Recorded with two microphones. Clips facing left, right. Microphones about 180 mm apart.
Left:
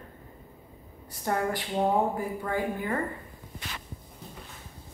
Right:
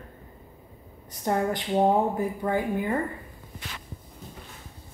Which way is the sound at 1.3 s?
20° right (ahead or behind).